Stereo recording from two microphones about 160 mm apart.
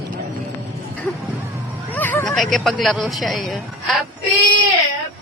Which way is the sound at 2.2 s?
Centre (ahead or behind).